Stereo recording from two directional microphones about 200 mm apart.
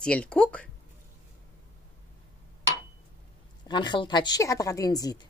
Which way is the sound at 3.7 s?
25° left (ahead or behind).